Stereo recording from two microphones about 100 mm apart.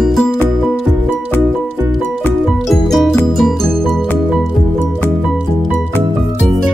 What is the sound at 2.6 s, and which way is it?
Music, centre (ahead or behind).